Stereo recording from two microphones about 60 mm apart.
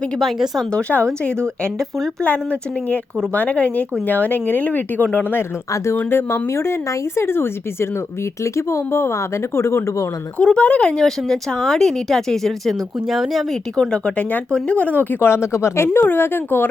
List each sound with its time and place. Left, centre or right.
0.2 s speech: centre
0.7 s speech: centre
2.2 s speech: left
5.7 s speech: left
6.0 s speech: left
8.4 s speech: left
10.4 s speech: centre
13.7 s speech: centre
15.3 s speech: left
15.9 s speech: left